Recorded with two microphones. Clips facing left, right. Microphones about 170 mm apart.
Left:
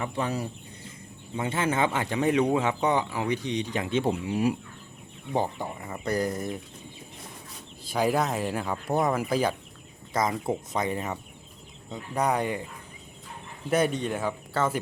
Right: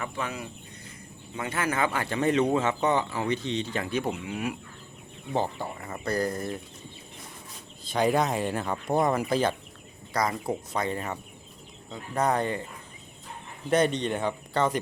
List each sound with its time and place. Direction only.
0.0 s speech: 35° left (ahead or behind)
5.3 s speech: 15° left (ahead or behind)
7.9 s speech: 5° left (ahead or behind)
10.1 s speech: 20° left (ahead or behind)
13.7 s speech: 5° left (ahead or behind)